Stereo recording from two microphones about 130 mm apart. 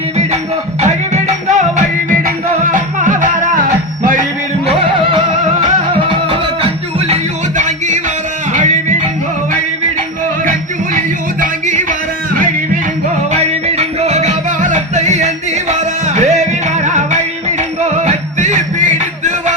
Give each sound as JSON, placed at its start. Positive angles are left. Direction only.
{"t": 0.8, "sound": "music", "side_deg": -60}
{"t": 4.6, "sound": "music", "side_deg": -45}
{"t": 7.1, "sound": "music", "side_deg": -70}
{"t": 10.4, "sound": "music", "side_deg": -90}
{"t": 13.3, "sound": "music", "side_deg": -55}